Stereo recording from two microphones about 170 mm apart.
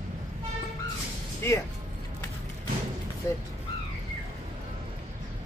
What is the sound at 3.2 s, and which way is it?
Speech, 20° left (ahead or behind).